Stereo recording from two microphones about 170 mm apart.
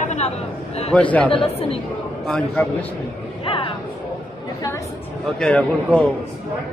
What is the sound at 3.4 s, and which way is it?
Vehicle, 30° left (ahead or behind).